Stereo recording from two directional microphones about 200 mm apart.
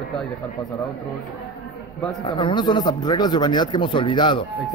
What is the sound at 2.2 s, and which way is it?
Speech, 25° left (ahead or behind).